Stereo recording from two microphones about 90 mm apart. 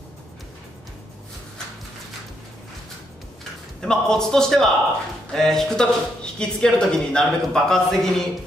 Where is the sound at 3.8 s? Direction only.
5° left (ahead or behind).